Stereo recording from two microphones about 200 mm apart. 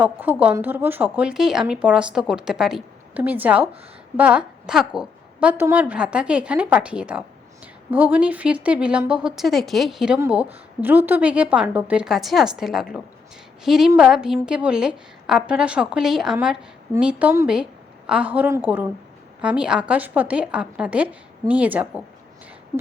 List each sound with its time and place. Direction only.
0.0 s a woman's voice: 10° right (ahead or behind)